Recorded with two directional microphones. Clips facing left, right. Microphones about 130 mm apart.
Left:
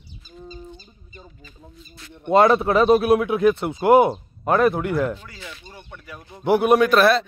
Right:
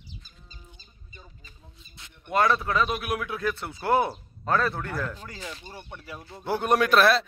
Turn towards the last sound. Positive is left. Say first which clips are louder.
# left 5 dB
turn(degrees=0)  # may be behind; listen again after turning